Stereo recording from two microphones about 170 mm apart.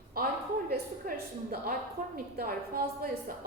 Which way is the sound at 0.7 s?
60° right (ahead or behind).